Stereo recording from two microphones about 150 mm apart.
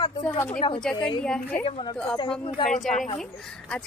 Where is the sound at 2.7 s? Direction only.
55° left (ahead or behind).